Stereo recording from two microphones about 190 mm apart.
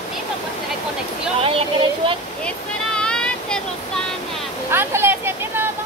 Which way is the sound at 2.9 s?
5° left (ahead or behind).